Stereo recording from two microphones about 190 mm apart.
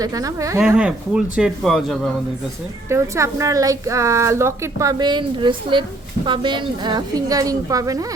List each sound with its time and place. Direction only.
0.0 s a woman's voice: 20° right (ahead or behind)
0.8 s speech: 5° right (ahead or behind)
2.9 s a woman's voice: 15° right (ahead or behind)